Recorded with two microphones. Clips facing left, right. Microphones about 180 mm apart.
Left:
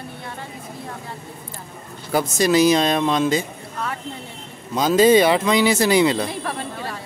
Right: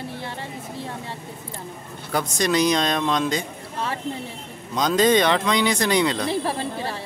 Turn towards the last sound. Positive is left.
turn(degrees=-30)  # may be behind; listen again after turning